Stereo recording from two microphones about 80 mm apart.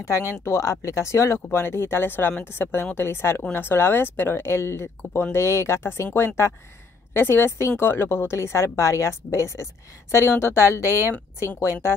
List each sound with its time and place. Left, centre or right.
0.0 s speech: left
10.7 s speech: right
11.3 s speech: left